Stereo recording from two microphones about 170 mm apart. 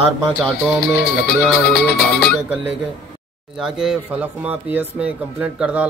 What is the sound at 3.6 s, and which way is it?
Speech, 5° right (ahead or behind).